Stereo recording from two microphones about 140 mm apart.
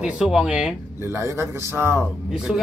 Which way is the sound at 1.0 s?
20° right (ahead or behind).